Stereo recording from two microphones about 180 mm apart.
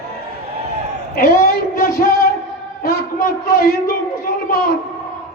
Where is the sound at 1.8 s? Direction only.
60° left (ahead or behind).